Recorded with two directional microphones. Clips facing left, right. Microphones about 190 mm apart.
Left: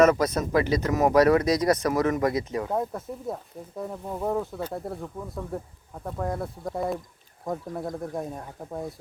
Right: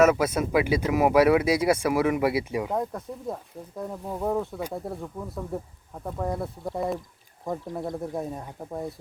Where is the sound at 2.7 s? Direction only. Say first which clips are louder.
Left 1 dB; 5° left (ahead or behind).